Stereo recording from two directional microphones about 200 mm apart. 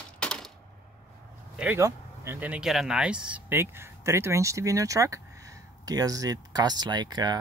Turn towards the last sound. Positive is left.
turn(degrees=-20)  # may be behind; listen again after turning